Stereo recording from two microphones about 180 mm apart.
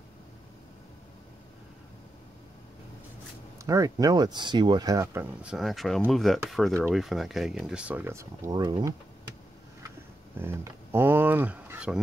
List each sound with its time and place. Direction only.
3.5 s speech: 20° right (ahead or behind)
10.4 s speech: 10° right (ahead or behind)